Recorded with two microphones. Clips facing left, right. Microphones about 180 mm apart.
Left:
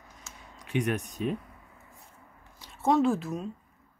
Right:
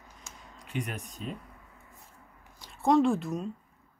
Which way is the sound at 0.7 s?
70° left (ahead or behind).